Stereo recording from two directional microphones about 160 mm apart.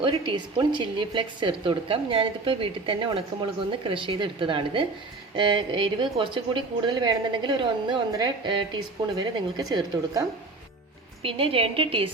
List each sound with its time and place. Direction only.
0.0 s a woman's voice: 30° right (ahead or behind)
11.2 s a woman's voice: 35° right (ahead or behind)